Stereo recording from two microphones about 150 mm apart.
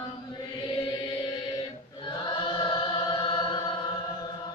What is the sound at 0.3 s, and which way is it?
Music, 30° left (ahead or behind).